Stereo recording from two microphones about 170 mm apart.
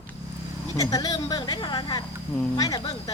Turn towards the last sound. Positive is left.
turn(degrees=20)  # may be behind; listen again after turning